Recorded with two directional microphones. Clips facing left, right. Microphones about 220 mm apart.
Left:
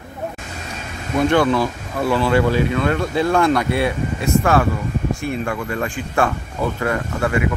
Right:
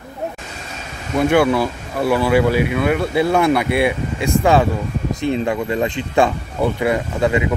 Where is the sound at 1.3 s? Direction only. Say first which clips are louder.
Right 2 dB; 10° right (ahead or behind).